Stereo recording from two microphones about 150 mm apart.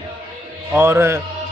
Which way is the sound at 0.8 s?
15° right (ahead or behind).